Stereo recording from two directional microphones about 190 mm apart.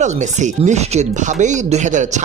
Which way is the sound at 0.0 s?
40° right (ahead or behind).